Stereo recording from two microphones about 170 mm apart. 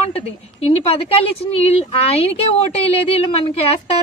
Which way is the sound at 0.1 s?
35° left (ahead or behind).